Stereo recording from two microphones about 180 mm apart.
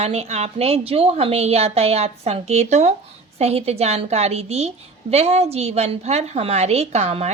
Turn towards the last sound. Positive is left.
turn(degrees=-35)  # may be behind; listen again after turning